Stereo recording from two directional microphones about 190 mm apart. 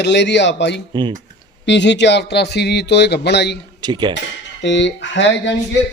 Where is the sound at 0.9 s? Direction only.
25° right (ahead or behind).